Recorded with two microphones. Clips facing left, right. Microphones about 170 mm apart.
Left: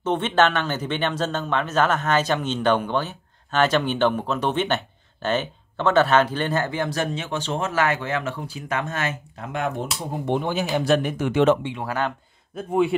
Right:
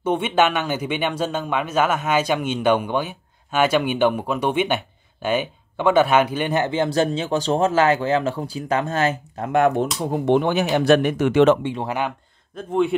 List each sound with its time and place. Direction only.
0.0 s speech: 10° right (ahead or behind); by 9.1 s 35° right (ahead or behind)
9.4 s speech: 55° right (ahead or behind)
10.2 s speech: 75° right (ahead or behind)
12.5 s speech: 5° left (ahead or behind)